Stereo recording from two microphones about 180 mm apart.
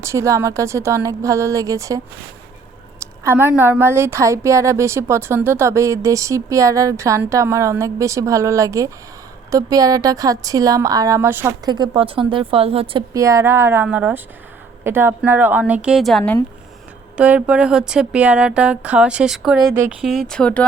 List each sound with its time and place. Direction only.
0.0 s a woman's voice: 15° right (ahead or behind)
3.0 s a woman's voice: 15° right (ahead or behind)
11.7 s speech: 25° right (ahead or behind)
13.1 s a woman's voice: 15° right (ahead or behind); by 16.4 s 5° left (ahead or behind)
17.2 s speech: 10° right (ahead or behind)